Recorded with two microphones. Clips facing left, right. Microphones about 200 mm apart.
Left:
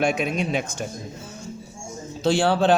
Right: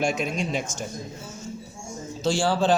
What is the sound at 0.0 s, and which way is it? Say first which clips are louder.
Speech: left 3 dB; 60° left (ahead or behind).